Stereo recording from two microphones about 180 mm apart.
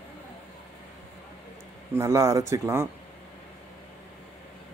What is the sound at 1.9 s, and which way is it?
Speech, 15° right (ahead or behind).